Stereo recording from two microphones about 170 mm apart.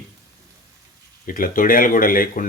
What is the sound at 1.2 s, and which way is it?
Speech, 55° left (ahead or behind).